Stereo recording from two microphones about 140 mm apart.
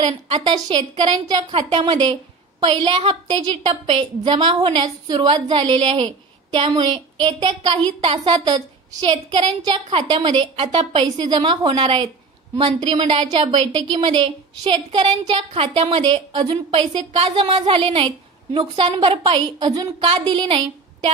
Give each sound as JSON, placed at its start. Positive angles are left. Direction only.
{"t": 0.0, "sound": "a woman's voice", "side_deg": -35}
{"t": 8.2, "sound": "a woman's voice", "side_deg": -30}